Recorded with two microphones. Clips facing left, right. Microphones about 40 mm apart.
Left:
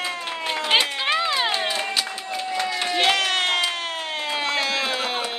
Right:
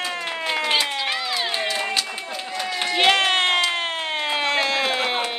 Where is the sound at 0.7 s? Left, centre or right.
Left.